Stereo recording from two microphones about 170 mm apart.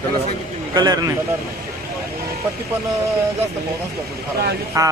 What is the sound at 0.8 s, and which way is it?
Speech, 20° right (ahead or behind).